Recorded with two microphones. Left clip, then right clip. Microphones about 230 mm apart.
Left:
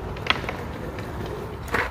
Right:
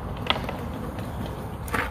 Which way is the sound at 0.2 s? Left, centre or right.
Centre.